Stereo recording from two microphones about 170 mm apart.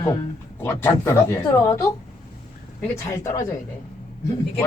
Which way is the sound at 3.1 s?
20° left (ahead or behind).